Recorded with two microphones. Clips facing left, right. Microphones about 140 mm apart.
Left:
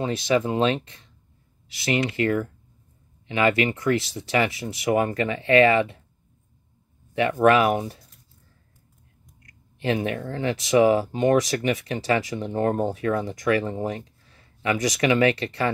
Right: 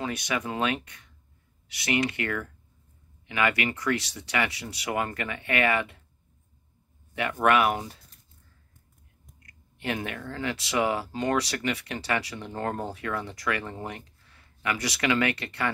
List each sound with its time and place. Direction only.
0.0 s speech: 25° left (ahead or behind)
7.2 s speech: 30° left (ahead or behind)
9.8 s speech: 25° left (ahead or behind)